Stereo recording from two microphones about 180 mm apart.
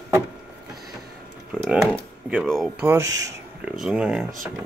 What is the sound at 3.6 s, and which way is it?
Speech, 5° right (ahead or behind).